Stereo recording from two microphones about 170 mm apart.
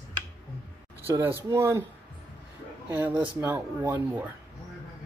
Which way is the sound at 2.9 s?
10° right (ahead or behind).